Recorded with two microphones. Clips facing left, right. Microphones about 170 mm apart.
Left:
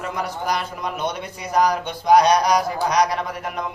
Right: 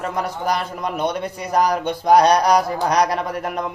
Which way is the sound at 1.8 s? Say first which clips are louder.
Right 2 dB; 55° right (ahead or behind).